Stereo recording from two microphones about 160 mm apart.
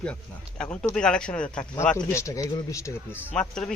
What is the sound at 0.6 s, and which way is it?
Speech, 5° left (ahead or behind).